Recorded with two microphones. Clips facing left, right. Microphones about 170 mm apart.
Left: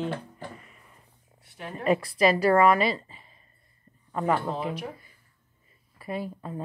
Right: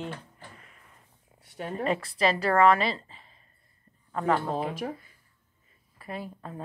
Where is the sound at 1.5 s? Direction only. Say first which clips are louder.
Even; 35° right (ahead or behind).